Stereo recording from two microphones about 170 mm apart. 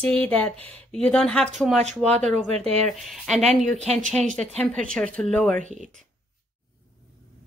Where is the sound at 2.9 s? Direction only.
Centre (ahead or behind).